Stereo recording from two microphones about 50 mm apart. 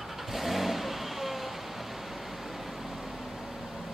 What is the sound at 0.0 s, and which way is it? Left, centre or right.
Vehicle, centre.